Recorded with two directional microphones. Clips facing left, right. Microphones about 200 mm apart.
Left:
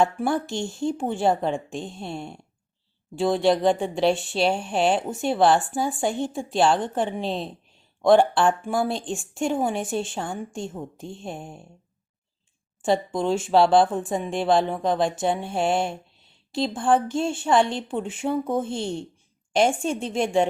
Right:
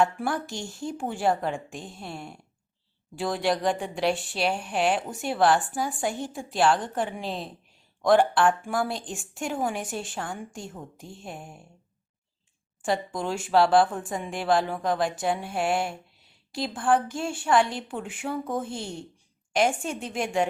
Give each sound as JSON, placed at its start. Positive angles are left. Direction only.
{"t": 0.0, "sound": "a woman's voice", "side_deg": 25}
{"t": 12.8, "sound": "a woman's voice", "side_deg": 25}